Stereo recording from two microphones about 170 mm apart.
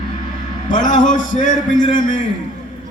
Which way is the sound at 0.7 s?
50° left (ahead or behind).